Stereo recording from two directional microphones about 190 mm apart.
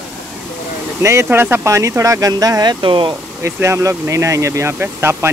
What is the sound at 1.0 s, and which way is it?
Speech, 15° right (ahead or behind).